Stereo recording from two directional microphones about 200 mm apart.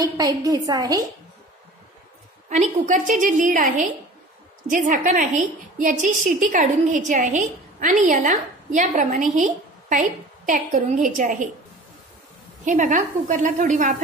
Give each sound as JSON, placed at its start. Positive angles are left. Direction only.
{"t": 0.2, "sound": "a woman's voice", "side_deg": -15}
{"t": 2.5, "sound": "a woman's voice", "side_deg": -35}
{"t": 12.6, "sound": "a woman's voice", "side_deg": -40}